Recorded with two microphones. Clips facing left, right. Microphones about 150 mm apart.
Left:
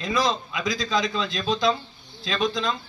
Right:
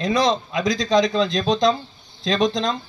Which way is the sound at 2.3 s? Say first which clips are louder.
Right 5 dB; 40° right (ahead or behind).